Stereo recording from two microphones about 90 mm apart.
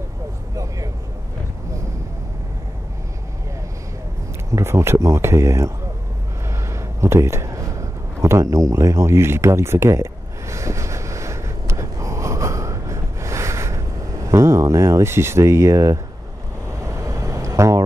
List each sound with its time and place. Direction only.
4.5 s speech: 30° right (ahead or behind)
7.0 s a man's voice: 30° right (ahead or behind)
10.5 s vehicle: 35° right (ahead or behind)
14.3 s speech: 35° right (ahead or behind)
16.6 s vehicle: 35° right (ahead or behind)